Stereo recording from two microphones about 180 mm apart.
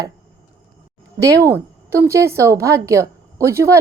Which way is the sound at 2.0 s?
15° right (ahead or behind).